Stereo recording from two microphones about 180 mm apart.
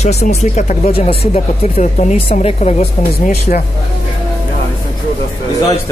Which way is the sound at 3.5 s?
50° left (ahead or behind).